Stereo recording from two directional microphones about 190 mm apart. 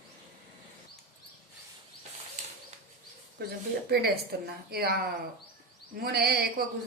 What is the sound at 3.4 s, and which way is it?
Speech, 55° right (ahead or behind).